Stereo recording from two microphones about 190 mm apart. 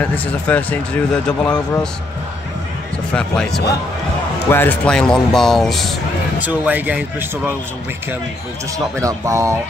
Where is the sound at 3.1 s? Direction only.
5° left (ahead or behind).